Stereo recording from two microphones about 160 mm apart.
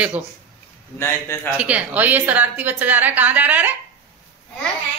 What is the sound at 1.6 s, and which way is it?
A woman's voice, 10° right (ahead or behind).